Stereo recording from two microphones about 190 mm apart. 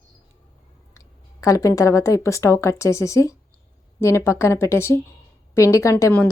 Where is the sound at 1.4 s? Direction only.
15° left (ahead or behind).